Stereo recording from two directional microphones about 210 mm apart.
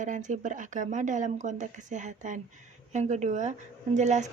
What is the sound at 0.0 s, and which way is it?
Speech, 35° right (ahead or behind).